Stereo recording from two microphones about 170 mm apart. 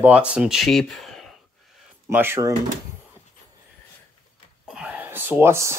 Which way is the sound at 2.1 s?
15° right (ahead or behind).